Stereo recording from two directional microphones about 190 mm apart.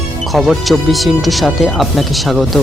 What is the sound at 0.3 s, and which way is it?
Speech, centre (ahead or behind).